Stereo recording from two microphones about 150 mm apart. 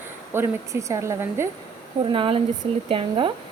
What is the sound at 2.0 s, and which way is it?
Speech, 35° right (ahead or behind).